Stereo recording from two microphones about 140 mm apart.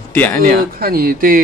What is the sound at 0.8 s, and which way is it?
Speech, 90° right.